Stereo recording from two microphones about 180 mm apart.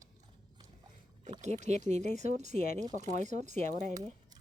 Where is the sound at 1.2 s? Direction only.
40° right (ahead or behind).